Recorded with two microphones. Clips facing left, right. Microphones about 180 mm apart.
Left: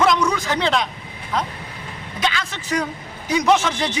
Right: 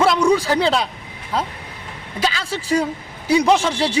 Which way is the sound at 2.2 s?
30° right (ahead or behind).